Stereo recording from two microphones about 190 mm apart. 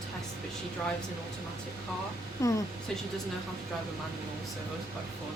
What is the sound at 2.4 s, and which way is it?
Speech, 15° left (ahead or behind).